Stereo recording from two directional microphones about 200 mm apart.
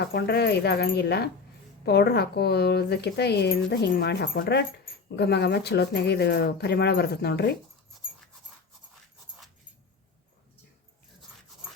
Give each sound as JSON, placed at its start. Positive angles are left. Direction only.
{"t": 0.0, "sound": "speech", "side_deg": 55}